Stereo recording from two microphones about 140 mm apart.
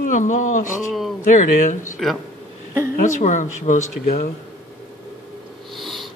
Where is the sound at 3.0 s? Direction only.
60° left (ahead or behind); by 4.3 s 90° left.